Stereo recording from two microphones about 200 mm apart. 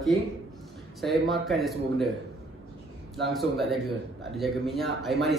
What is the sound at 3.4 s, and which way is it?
A man's voice, centre (ahead or behind).